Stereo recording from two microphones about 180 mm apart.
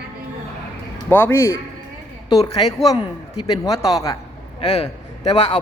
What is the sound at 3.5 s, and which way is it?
Speech, 20° left (ahead or behind).